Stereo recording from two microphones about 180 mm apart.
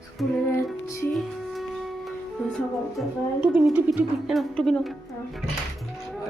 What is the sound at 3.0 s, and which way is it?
A woman's voice, 10° right (ahead or behind).